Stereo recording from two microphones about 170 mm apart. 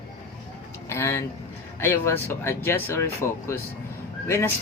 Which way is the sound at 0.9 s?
15° left (ahead or behind).